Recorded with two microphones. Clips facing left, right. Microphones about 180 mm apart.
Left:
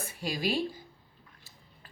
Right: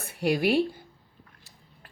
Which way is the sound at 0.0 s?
65° right (ahead or behind).